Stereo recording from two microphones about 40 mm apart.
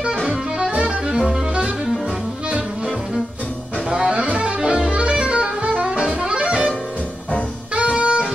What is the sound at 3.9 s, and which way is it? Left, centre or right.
Music, right.